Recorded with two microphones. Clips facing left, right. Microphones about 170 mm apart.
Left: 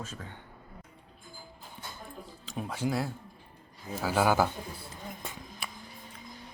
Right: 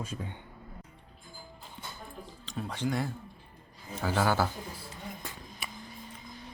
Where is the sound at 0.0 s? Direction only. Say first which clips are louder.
Right 3 dB; 15° right (ahead or behind).